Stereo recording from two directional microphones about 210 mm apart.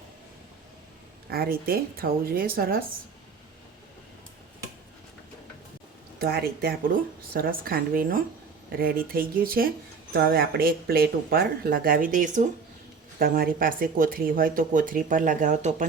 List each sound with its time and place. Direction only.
1.3 s speech: 45° right (ahead or behind)
6.1 s speech: 50° right (ahead or behind)